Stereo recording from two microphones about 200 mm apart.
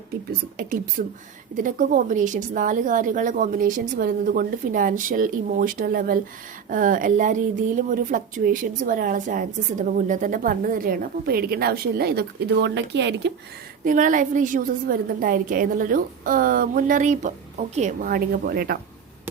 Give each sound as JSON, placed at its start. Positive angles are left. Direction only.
{"t": 0.3, "sound": "a woman's voice", "side_deg": -45}
{"t": 13.8, "sound": "speech", "side_deg": -40}